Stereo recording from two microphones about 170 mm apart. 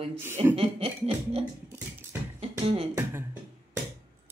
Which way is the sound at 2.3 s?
35° right (ahead or behind).